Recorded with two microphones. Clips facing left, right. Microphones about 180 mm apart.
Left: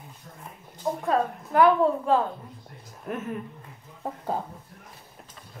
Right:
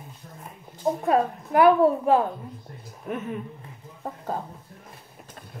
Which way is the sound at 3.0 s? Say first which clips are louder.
Right 1 dB; centre (ahead or behind).